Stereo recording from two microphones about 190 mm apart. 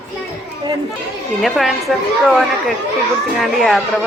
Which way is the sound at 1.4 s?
Centre (ahead or behind).